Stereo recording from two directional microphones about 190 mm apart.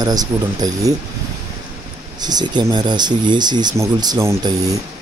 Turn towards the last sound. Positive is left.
turn(degrees=-20)  # may be behind; listen again after turning